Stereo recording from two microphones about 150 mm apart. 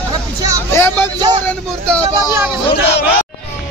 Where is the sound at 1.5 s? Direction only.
5° left (ahead or behind).